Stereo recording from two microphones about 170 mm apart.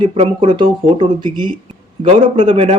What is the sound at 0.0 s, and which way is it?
Speech, 30° right (ahead or behind).